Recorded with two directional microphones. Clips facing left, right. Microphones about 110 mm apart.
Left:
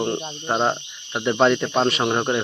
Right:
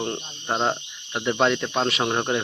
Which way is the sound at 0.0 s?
10° left (ahead or behind).